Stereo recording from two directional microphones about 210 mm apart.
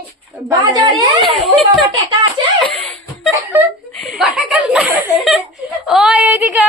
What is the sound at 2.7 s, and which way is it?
Laughter, centre (ahead or behind).